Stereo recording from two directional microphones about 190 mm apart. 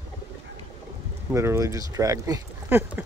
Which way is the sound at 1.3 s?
15° right (ahead or behind).